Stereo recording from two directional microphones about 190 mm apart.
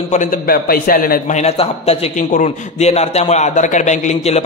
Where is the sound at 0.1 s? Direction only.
45° left (ahead or behind).